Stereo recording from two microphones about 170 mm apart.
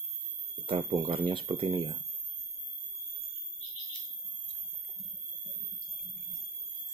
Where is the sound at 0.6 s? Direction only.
30° right (ahead or behind).